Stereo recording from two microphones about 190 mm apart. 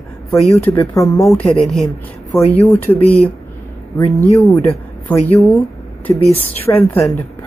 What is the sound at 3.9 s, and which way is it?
Speech, 30° left (ahead or behind).